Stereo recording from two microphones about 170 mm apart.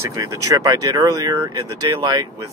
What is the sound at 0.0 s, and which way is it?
Speech, 20° right (ahead or behind).